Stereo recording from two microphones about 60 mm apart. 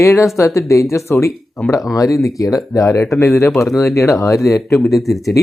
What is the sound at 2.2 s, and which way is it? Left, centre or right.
Speech, left.